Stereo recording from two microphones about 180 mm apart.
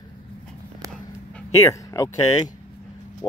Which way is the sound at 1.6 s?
15° left (ahead or behind).